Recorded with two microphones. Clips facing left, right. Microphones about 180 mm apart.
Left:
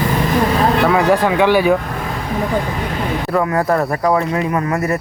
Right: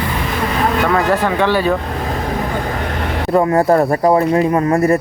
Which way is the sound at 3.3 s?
25° right (ahead or behind).